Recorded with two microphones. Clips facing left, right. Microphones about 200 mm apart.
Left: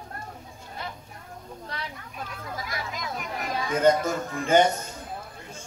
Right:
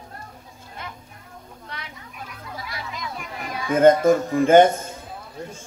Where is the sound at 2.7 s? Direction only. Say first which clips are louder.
Right 2 dB; 45° left (ahead or behind).